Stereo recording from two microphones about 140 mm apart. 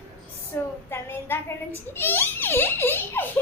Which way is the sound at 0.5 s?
15° left (ahead or behind).